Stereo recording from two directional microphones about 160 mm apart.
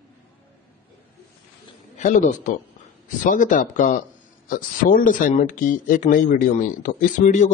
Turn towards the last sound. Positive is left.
turn(degrees=50)  # may be behind; listen again after turning